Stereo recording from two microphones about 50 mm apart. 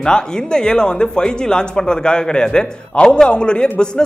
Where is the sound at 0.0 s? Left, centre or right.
Centre.